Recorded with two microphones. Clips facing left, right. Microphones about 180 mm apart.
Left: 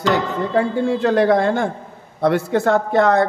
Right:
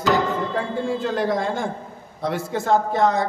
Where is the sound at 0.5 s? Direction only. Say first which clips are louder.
Left 6 dB; 70° left (ahead or behind).